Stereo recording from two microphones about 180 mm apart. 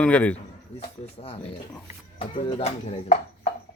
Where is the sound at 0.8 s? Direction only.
35° left (ahead or behind).